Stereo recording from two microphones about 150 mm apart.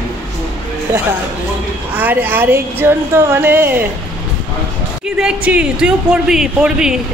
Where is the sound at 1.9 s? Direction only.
10° right (ahead or behind).